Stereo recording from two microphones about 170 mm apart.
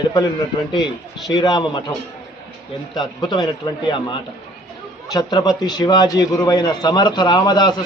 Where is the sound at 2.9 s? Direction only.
25° left (ahead or behind).